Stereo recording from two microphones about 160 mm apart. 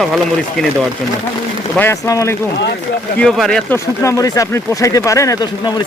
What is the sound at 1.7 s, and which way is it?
Speech, 15° left (ahead or behind).